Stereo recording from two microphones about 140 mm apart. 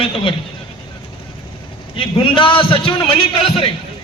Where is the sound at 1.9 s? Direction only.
40° left (ahead or behind).